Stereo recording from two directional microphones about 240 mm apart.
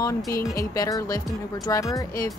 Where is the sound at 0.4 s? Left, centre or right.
Centre.